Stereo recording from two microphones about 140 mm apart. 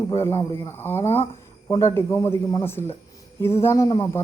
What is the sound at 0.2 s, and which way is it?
Speech, 20° left (ahead or behind).